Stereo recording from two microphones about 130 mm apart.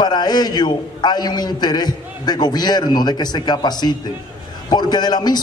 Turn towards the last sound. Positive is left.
turn(degrees=30)  # may be behind; listen again after turning